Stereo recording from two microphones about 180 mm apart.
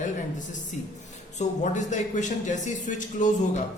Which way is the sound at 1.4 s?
40° left (ahead or behind).